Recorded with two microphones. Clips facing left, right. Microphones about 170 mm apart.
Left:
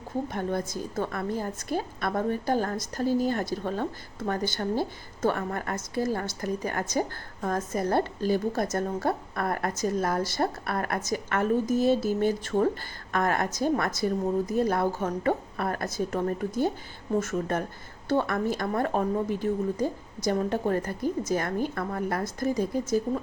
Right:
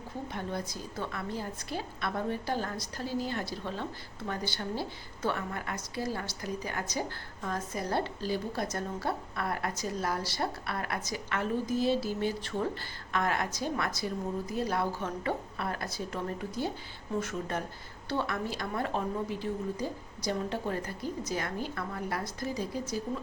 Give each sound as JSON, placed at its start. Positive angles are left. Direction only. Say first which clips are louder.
{"t": 0.3, "sound": "a woman's voice", "louder": "left 4 dB", "side_deg": 50}